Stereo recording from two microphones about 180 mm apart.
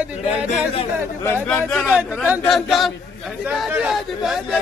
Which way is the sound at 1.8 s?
5° right (ahead or behind).